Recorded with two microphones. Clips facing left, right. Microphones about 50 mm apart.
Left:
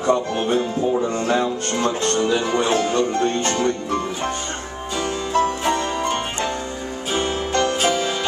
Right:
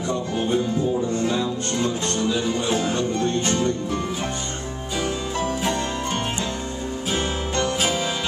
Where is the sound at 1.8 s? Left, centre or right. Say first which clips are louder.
Left 5 dB; left.